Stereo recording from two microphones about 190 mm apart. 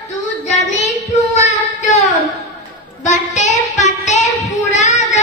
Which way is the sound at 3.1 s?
40° left (ahead or behind).